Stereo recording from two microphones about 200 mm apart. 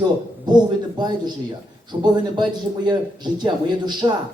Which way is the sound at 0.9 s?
20° right (ahead or behind).